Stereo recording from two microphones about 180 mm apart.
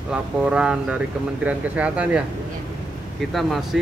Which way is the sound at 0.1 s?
5° right (ahead or behind).